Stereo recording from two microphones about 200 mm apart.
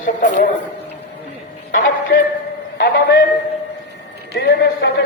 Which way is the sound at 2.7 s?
55° left (ahead or behind).